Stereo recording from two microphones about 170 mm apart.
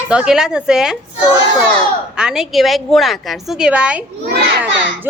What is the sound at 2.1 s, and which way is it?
A woman's voice, 5° right (ahead or behind).